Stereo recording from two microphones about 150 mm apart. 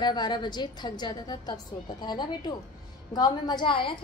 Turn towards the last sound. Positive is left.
turn(degrees=35)  # may be behind; listen again after turning